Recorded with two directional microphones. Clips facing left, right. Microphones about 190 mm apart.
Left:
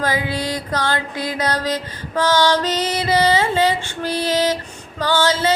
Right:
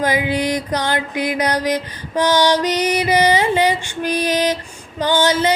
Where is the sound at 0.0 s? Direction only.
15° right (ahead or behind).